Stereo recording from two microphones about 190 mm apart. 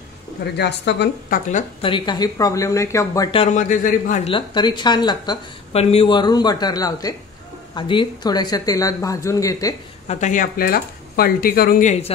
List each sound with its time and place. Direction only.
0.6 s a woman's voice: 60° left (ahead or behind)
1.5 s speech: 25° left (ahead or behind)
3.3 s a man's voice: 40° left (ahead or behind)
4.3 s speech: 25° left (ahead or behind)
10.0 s speech: 40° left (ahead or behind)